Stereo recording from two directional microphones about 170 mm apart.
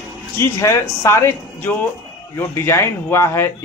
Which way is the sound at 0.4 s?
15° left (ahead or behind).